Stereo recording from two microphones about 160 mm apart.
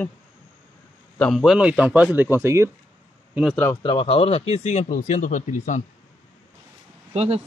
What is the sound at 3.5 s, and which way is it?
Speech, 15° left (ahead or behind).